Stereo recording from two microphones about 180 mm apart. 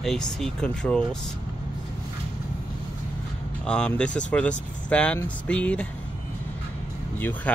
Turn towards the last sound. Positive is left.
turn(degrees=10)  # may be behind; listen again after turning